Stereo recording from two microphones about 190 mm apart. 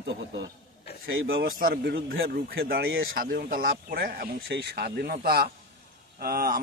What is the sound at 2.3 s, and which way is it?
Speech, 55° right (ahead or behind).